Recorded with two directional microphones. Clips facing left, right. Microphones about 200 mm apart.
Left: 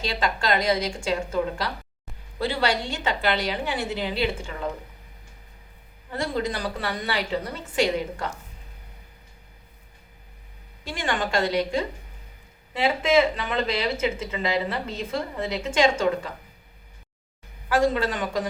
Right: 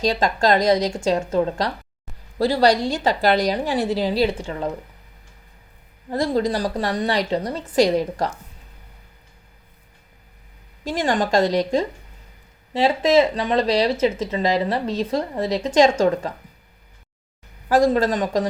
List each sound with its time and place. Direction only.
0.0 s speech: 40° right (ahead or behind)
6.1 s speech: 35° right (ahead or behind)
10.8 s speech: 40° right (ahead or behind)
17.7 s speech: 40° right (ahead or behind)